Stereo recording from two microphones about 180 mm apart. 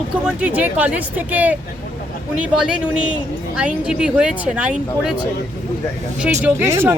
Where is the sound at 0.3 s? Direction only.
5° right (ahead or behind).